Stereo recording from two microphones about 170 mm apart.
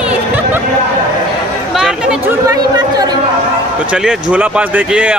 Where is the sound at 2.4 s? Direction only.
20° right (ahead or behind).